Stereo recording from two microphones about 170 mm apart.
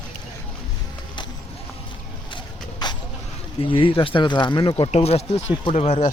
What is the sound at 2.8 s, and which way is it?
Vehicle, 25° left (ahead or behind).